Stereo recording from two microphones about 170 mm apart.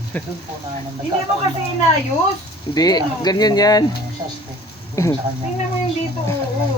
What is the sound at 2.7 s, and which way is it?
Speech, 25° left (ahead or behind).